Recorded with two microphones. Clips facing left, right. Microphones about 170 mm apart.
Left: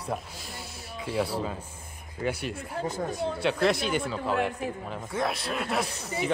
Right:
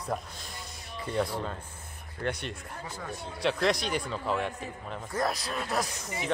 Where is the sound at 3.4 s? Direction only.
Centre (ahead or behind).